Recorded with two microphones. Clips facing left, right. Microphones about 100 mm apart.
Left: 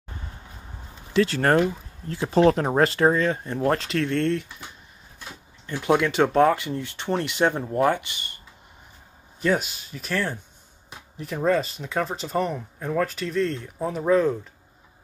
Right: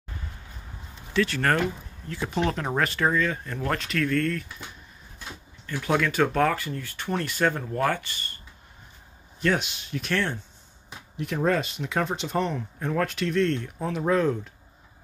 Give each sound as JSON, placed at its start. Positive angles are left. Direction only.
{"t": 1.1, "sound": "speech", "side_deg": 30}
{"t": 5.7, "sound": "speech", "side_deg": 20}
{"t": 9.4, "sound": "speech", "side_deg": 5}